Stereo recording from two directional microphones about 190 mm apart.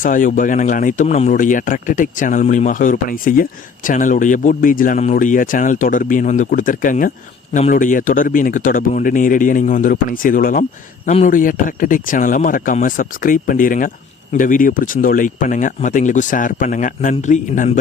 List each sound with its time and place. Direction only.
0.0 s speech: 45° left (ahead or behind)